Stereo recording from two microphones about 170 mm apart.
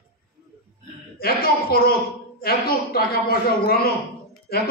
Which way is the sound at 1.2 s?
60° left (ahead or behind).